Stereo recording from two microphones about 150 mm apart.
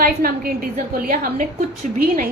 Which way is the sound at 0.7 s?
70° right (ahead or behind).